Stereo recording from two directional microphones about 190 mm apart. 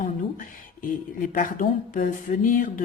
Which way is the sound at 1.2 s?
45° left (ahead or behind).